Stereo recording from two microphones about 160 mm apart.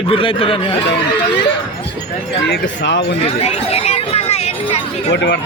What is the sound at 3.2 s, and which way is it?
Speech, 40° left (ahead or behind).